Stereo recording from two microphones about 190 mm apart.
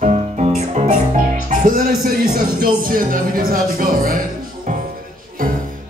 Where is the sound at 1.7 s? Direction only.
50° right (ahead or behind).